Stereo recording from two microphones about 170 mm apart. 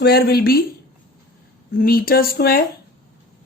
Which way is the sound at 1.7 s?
60° left (ahead or behind).